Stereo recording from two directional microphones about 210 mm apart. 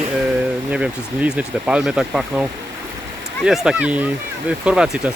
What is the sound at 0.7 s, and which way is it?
Speech, 5° right (ahead or behind).